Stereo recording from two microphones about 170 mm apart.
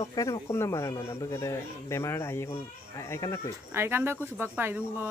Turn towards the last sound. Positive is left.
turn(degrees=-10)  # may be behind; listen again after turning